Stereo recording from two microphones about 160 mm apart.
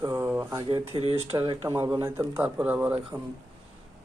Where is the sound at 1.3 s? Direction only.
25° right (ahead or behind).